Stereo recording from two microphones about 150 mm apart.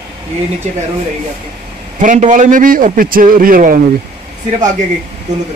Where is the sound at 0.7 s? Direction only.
50° right (ahead or behind).